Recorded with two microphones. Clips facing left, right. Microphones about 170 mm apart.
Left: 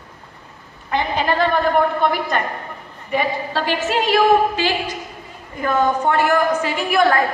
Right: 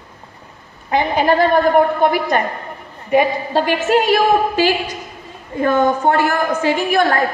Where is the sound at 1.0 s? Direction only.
50° right (ahead or behind).